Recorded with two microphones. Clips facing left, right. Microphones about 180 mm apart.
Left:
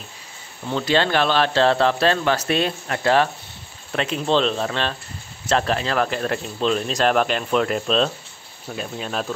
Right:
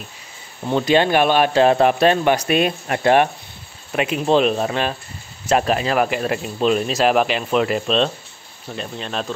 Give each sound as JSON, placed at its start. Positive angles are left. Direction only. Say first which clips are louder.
{"t": 0.7, "sound": "speech", "louder": "right 4 dB", "side_deg": -15}